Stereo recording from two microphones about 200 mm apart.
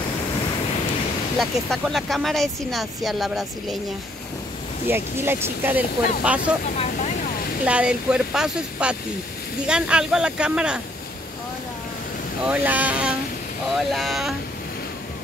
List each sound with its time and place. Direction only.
1.4 s speech: centre (ahead or behind)
4.8 s speech: 10° right (ahead or behind)
6.8 s vehicle: 40° left (ahead or behind)
7.6 s speech: 5° right (ahead or behind)
12.4 s speech: 10° right (ahead or behind)